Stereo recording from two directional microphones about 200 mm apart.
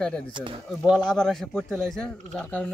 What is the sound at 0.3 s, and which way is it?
Speech, 25° right (ahead or behind).